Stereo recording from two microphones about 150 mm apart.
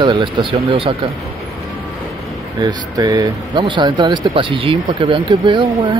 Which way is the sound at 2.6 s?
25° right (ahead or behind).